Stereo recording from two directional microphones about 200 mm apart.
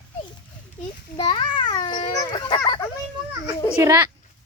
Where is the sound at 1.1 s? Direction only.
25° left (ahead or behind).